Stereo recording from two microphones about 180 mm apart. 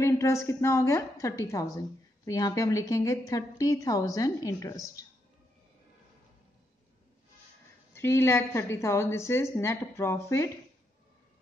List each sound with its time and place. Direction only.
0.0 s a woman's voice: 15° left (ahead or behind)
7.9 s a woman's voice: 15° left (ahead or behind)